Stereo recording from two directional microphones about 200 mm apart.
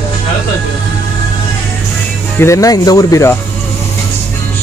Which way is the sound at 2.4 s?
15° left (ahead or behind).